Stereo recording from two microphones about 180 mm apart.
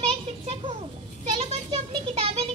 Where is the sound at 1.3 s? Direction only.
30° right (ahead or behind).